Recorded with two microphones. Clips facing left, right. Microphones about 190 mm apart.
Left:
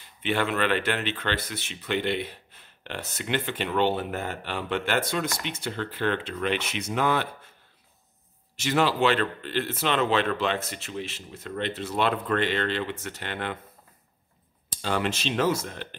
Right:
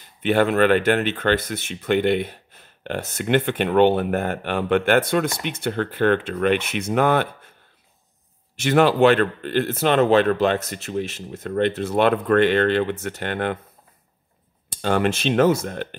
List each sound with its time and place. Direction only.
0.2 s speech: 45° right (ahead or behind)
8.5 s speech: 55° right (ahead or behind)
14.7 s speech: 55° right (ahead or behind)